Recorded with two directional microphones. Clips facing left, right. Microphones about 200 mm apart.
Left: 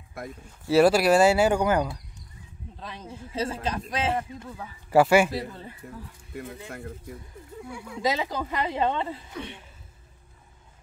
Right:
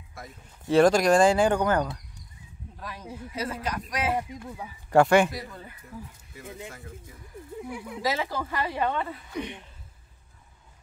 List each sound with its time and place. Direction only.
0.7 s speech: 5° left (ahead or behind)
2.8 s speech: 25° left (ahead or behind)
4.2 s speech: 15° right (ahead or behind)
4.9 s speech: 5° left (ahead or behind)
5.5 s speech: 30° left (ahead or behind)
7.7 s speech: 20° right (ahead or behind)
8.0 s speech: 20° left (ahead or behind)